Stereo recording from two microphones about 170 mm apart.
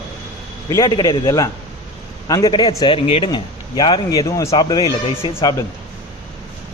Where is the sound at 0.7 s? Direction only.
20° left (ahead or behind).